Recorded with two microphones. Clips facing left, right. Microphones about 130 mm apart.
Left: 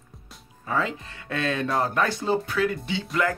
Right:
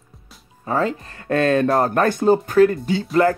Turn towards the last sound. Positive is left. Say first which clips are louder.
# right 10 dB
turn(degrees=-45)  # may be behind; listen again after turning